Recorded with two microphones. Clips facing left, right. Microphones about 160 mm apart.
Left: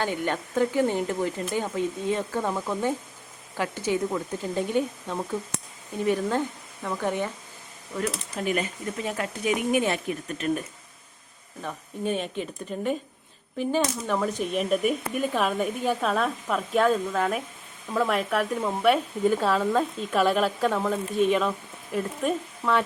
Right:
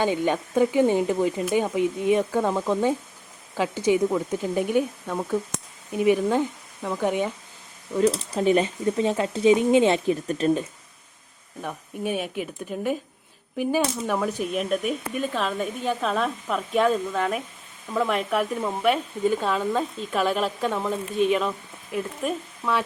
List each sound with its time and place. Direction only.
0.0 s speech: 15° right (ahead or behind)
8.1 s speech: 30° right (ahead or behind)
11.6 s speech: 10° right (ahead or behind)